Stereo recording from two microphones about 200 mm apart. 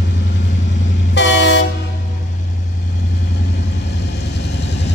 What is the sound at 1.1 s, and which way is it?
Train, 60° left (ahead or behind).